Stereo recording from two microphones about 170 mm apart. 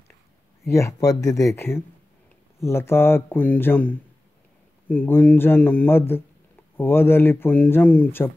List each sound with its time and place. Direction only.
0.7 s speech: 15° left (ahead or behind)